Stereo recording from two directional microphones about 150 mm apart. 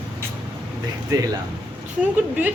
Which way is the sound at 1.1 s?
20° right (ahead or behind).